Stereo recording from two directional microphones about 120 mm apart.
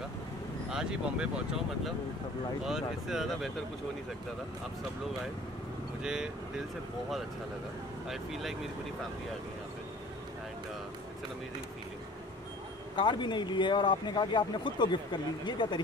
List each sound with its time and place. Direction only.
0.7 s speech: 5° right (ahead or behind)
2.6 s speech: 5° right (ahead or behind)
6.0 s speech: 5° right (ahead or behind)
8.1 s speech: centre (ahead or behind)
12.9 s speech: 40° left (ahead or behind)